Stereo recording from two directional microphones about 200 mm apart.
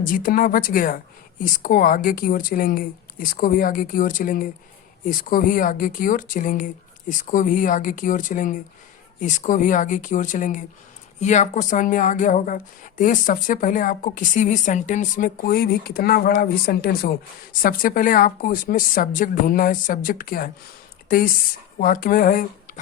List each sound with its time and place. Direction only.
0.0 s a woman's voice: 45° left (ahead or behind)
21.8 s speech: 45° left (ahead or behind)